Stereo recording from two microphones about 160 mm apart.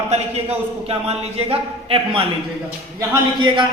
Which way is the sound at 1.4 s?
35° right (ahead or behind).